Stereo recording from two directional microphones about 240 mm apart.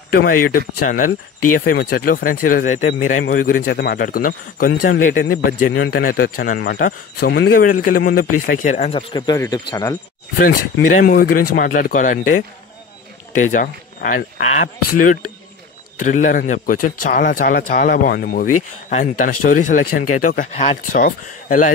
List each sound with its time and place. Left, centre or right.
0.1 s speech: left; by 9.9 s centre
10.9 s speech: left